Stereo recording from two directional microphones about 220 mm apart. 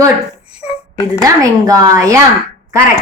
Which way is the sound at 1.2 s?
15° right (ahead or behind).